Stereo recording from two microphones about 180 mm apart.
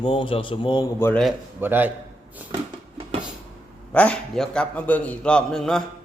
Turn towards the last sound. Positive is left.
turn(degrees=0)  # may be behind; listen again after turning